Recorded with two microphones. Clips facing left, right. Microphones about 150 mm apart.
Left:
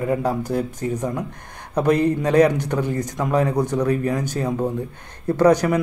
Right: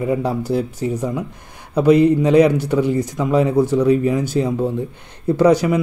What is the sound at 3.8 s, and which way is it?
Speech, 10° right (ahead or behind).